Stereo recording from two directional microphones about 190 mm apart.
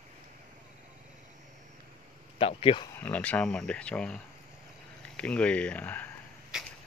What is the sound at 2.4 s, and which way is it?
Speech, 30° left (ahead or behind).